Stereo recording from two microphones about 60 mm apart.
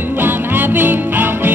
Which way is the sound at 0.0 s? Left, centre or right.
Right.